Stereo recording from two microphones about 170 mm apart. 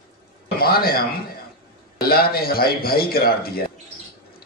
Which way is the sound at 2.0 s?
65° left (ahead or behind).